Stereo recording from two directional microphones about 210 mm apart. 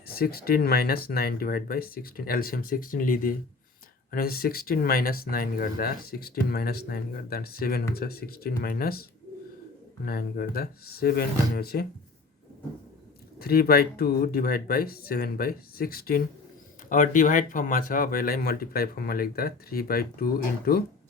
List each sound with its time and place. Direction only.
0.1 s speech: 45° left (ahead or behind)
10.1 s speech: 45° left (ahead or behind)
13.4 s speech: 45° left (ahead or behind)